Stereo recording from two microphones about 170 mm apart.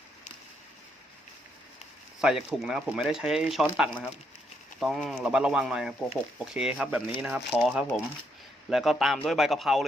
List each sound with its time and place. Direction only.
2.2 s speech: 5° right (ahead or behind)